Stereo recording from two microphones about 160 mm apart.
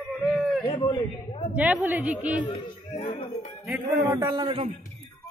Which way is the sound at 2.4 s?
25° left (ahead or behind).